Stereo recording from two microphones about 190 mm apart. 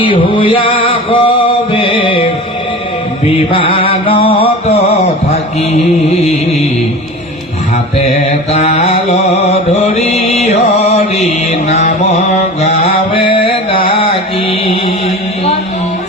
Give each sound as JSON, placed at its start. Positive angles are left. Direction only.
{"t": 0.0, "sound": "music", "side_deg": 25}
{"t": 1.7, "sound": "mantra", "side_deg": 25}
{"t": 3.5, "sound": "music", "side_deg": 30}
{"t": 8.0, "sound": "mantra", "side_deg": 35}